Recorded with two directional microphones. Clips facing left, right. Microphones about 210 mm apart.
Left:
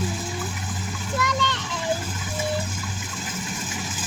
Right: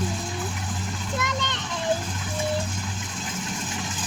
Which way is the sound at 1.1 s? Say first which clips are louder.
Left 4 dB; 20° right (ahead or behind).